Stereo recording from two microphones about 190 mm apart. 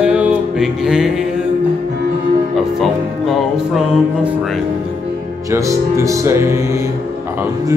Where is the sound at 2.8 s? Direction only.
Centre (ahead or behind).